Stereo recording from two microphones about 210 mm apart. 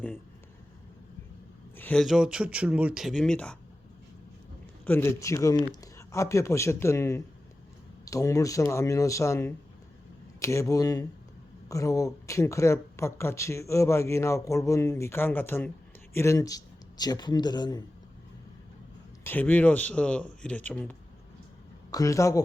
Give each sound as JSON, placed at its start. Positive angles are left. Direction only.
{"t": 1.7, "sound": "speech", "side_deg": 5}
{"t": 4.9, "sound": "speech", "side_deg": 10}
{"t": 19.2, "sound": "a man's voice", "side_deg": 10}